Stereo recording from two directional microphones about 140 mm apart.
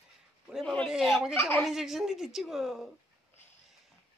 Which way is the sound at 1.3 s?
15° left (ahead or behind).